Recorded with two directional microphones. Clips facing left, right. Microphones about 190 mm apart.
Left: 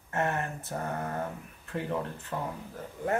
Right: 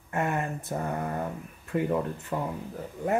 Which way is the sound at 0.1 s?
15° right (ahead or behind).